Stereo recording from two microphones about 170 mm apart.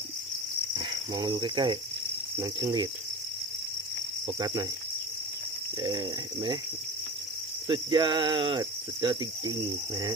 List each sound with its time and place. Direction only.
0.8 s speech: 25° right (ahead or behind)
2.4 s cricket: 20° right (ahead or behind)
4.4 s cricket: 25° right (ahead or behind)
5.8 s cricket: 25° right (ahead or behind)
7.7 s cricket: 30° right (ahead or behind)